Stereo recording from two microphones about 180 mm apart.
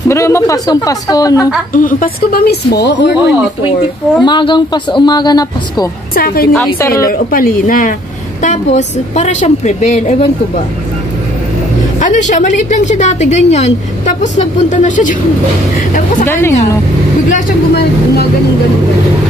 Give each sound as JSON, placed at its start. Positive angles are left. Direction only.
{"t": 0.1, "sound": "speech", "side_deg": 15}
{"t": 1.7, "sound": "speech", "side_deg": 50}
{"t": 4.2, "sound": "speech", "side_deg": 25}
{"t": 6.1, "sound": "speech", "side_deg": 55}
{"t": 6.5, "sound": "a woman's voice", "side_deg": 10}
{"t": 6.9, "sound": "a woman's voice", "side_deg": 55}
{"t": 8.4, "sound": "a woman's voice", "side_deg": 40}
{"t": 12.0, "sound": "a woman's voice", "side_deg": 45}
{"t": 16.3, "sound": "a woman's voice", "side_deg": 15}
{"t": 17.3, "sound": "speech", "side_deg": 60}